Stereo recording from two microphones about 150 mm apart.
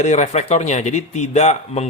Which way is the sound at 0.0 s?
50° left (ahead or behind).